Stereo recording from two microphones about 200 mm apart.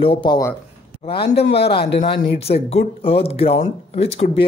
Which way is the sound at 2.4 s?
30° left (ahead or behind).